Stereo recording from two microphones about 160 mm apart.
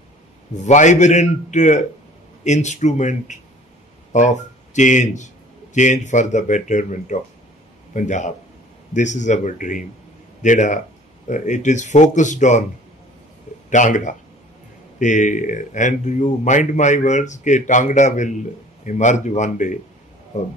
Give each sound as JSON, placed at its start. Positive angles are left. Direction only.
{"t": 0.6, "sound": "a man's voice", "side_deg": 50}
{"t": 13.7, "sound": "a man's voice", "side_deg": 50}